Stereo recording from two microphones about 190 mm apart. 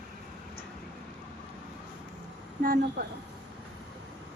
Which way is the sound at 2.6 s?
50° right (ahead or behind).